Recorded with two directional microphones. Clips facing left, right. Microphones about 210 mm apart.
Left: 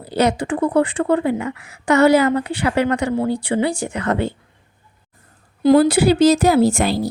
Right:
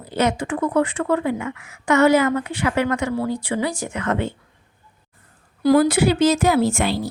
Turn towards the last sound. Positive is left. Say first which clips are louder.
# left 4 dB
turn(degrees=40)  # may be behind; listen again after turning